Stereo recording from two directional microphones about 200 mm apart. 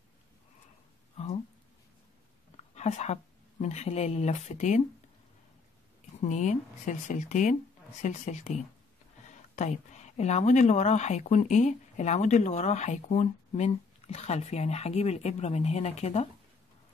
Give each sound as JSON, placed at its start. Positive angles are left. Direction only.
{"t": 1.1, "sound": "a sound", "side_deg": 30}
{"t": 2.7, "sound": "a woman's voice", "side_deg": 35}
{"t": 6.2, "sound": "a woman's voice", "side_deg": 35}
{"t": 9.6, "sound": "a woman's voice", "side_deg": 35}